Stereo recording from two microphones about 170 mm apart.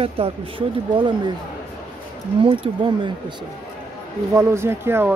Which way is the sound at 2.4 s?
30° right (ahead or behind).